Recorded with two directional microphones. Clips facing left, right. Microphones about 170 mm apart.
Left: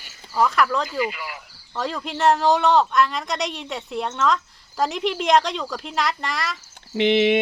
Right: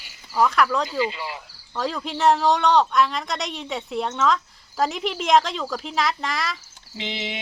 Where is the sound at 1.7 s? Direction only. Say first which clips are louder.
Even; centre (ahead or behind).